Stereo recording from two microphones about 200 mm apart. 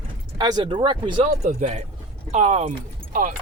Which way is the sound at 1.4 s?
35° right (ahead or behind).